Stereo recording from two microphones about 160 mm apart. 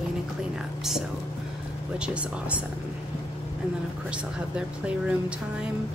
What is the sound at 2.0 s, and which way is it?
Speech, 10° right (ahead or behind).